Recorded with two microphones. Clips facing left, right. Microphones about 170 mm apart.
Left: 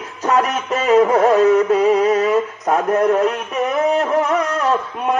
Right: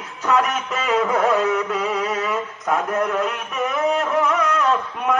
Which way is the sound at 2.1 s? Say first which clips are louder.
Left 8 dB; 45° left (ahead or behind).